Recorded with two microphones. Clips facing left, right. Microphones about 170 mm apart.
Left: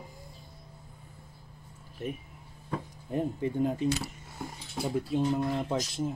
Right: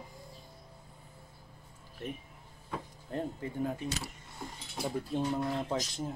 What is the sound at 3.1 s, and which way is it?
Speech, 20° left (ahead or behind).